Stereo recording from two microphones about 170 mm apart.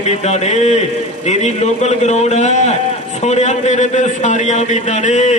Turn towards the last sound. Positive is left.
turn(degrees=45)  # may be behind; listen again after turning